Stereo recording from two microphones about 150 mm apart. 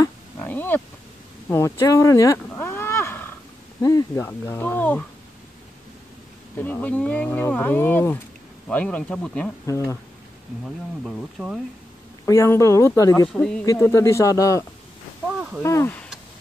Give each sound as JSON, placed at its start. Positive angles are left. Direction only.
{"t": 0.0, "sound": "a sound", "side_deg": 15}
{"t": 3.8, "sound": "speech", "side_deg": 20}
{"t": 6.5, "sound": "speech", "side_deg": 10}
{"t": 9.7, "sound": "speech", "side_deg": 20}
{"t": 11.1, "sound": "speech", "side_deg": 5}
{"t": 12.3, "sound": "speech", "side_deg": 20}
{"t": 13.3, "sound": "speech", "side_deg": 5}
{"t": 13.7, "sound": "speech", "side_deg": 20}
{"t": 15.2, "sound": "a sound", "side_deg": -5}
{"t": 15.6, "sound": "speech", "side_deg": 20}